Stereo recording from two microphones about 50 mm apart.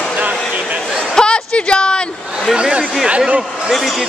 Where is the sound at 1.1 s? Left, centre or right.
Centre.